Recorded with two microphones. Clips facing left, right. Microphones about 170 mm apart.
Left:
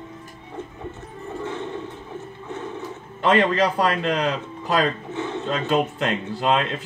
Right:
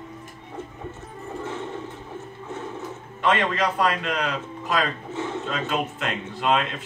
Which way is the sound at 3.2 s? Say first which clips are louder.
Left 4 dB; 35° left (ahead or behind).